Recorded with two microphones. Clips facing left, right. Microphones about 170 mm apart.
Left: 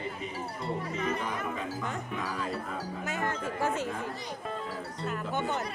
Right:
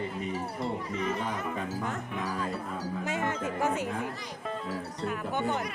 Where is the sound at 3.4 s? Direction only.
15° right (ahead or behind).